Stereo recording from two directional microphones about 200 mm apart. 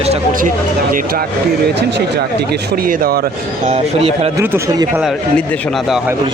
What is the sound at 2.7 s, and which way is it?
Speech, 45° right (ahead or behind).